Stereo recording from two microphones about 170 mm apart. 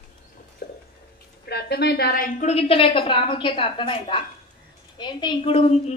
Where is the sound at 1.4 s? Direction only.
70° left (ahead or behind).